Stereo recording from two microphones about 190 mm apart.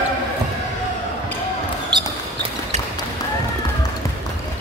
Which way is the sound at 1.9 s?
25° right (ahead or behind).